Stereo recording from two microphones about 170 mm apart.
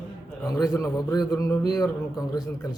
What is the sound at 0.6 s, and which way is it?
A man's voice, 20° left (ahead or behind).